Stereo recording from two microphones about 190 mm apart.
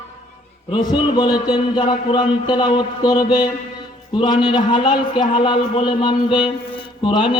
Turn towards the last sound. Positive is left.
turn(degrees=25)  # may be behind; listen again after turning